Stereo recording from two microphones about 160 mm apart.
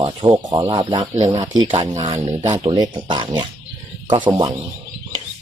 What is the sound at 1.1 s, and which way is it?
Speech, 45° right (ahead or behind).